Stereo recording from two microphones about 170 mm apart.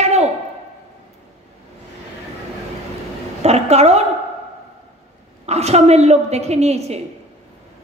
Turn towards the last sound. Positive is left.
turn(degrees=-40)  # may be behind; listen again after turning